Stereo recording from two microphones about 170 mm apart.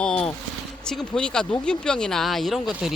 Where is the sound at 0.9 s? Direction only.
5° left (ahead or behind).